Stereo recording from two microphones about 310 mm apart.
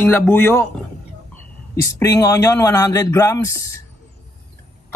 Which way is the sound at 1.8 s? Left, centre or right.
Centre.